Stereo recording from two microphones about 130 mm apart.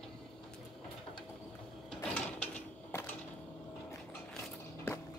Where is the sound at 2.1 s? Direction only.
10° left (ahead or behind).